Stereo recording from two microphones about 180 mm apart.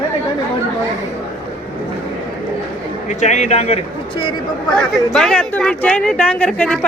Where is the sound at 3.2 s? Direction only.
40° left (ahead or behind).